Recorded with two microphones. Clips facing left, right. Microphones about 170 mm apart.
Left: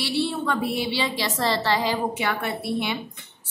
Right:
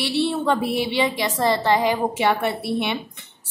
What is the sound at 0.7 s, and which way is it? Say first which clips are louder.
A woman's voice: right 4 dB; 20° right (ahead or behind).